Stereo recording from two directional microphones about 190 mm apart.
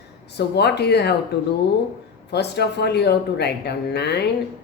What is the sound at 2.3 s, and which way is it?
A woman's voice, 60° left (ahead or behind).